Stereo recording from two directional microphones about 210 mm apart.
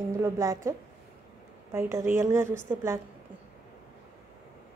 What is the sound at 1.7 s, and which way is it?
Speech, 15° right (ahead or behind).